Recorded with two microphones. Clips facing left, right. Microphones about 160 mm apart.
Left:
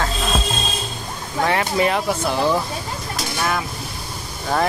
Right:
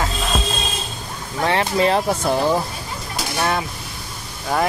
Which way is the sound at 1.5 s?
30° right (ahead or behind).